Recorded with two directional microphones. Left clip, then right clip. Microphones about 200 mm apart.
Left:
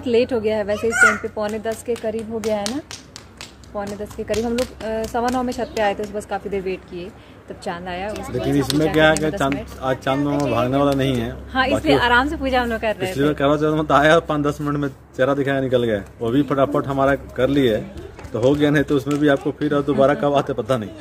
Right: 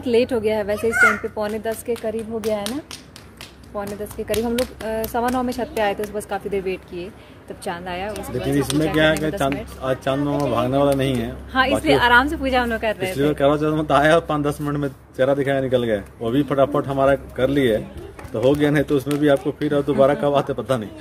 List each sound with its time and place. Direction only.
0.0 s a woman's voice: 5° right (ahead or behind)
3.7 s a woman's voice: 5° right (ahead or behind)
8.5 s a man's voice: 15° left (ahead or behind)
11.5 s a woman's voice: 10° right (ahead or behind)
13.1 s a man's voice: 15° left (ahead or behind)